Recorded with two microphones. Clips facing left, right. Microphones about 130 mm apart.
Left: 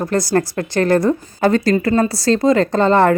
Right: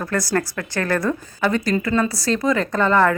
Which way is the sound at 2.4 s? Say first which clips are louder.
Left 5 dB; 25° left (ahead or behind).